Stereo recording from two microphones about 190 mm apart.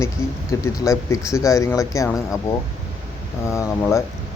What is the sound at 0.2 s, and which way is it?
Speech, 15° left (ahead or behind).